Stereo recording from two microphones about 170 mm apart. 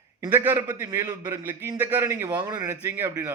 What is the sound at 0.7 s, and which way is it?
Speech, 25° right (ahead or behind).